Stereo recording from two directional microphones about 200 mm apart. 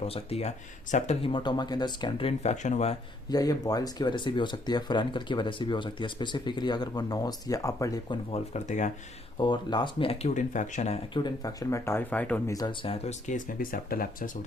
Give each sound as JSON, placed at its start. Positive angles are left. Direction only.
{"t": 0.0, "sound": "speech", "side_deg": 30}
{"t": 3.2, "sound": "speech", "side_deg": 20}
{"t": 8.3, "sound": "speech", "side_deg": 35}
{"t": 9.4, "sound": "speech", "side_deg": 20}